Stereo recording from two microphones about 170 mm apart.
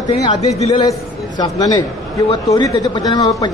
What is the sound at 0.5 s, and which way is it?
Speech, 35° left (ahead or behind).